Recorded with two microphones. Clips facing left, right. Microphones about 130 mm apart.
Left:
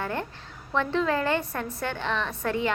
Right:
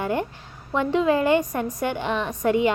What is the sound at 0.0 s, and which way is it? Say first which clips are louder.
A woman's voice: right 6 dB; 15° right (ahead or behind).